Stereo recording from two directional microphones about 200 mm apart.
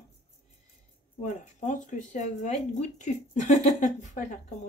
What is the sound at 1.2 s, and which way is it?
Speech, 40° left (ahead or behind).